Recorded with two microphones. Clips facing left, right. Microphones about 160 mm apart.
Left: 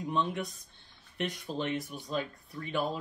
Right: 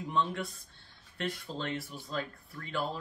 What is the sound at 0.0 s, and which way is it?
Speech, 20° left (ahead or behind).